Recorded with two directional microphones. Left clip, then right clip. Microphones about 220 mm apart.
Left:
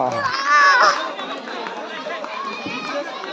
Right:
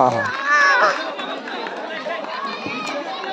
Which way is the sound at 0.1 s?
5° right (ahead or behind).